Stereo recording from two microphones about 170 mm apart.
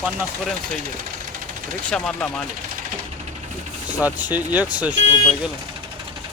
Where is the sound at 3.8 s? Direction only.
10° right (ahead or behind).